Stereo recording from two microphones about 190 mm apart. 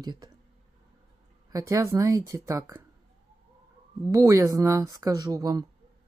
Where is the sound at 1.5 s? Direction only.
15° right (ahead or behind).